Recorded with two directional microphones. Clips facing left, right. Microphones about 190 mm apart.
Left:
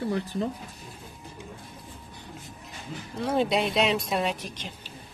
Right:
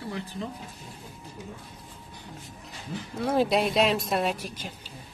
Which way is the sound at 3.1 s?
Centre (ahead or behind).